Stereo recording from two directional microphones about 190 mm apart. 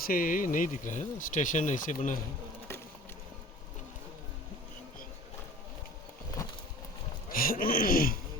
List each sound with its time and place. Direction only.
0.0 s speech: 50° left (ahead or behind)
7.3 s speech: 50° left (ahead or behind)